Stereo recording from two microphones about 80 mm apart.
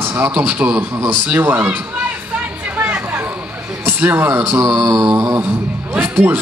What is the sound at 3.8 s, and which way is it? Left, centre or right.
A man's voice, right.